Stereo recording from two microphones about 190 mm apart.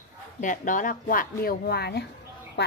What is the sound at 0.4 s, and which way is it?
Speech, 45° left (ahead or behind).